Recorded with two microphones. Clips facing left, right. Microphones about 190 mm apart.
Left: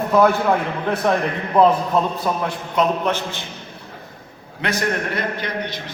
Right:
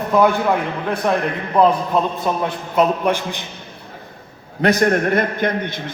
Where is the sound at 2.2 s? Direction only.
Centre (ahead or behind).